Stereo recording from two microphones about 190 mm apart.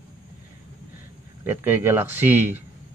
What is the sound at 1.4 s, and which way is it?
Speech, 10° right (ahead or behind).